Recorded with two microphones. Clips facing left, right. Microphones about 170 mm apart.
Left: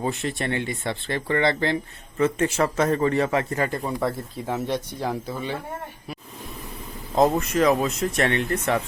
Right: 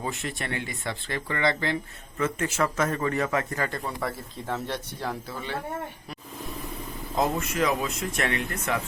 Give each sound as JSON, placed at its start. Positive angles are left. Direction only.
{"t": 0.0, "sound": "speech", "side_deg": 30}
{"t": 7.2, "sound": "speech", "side_deg": 40}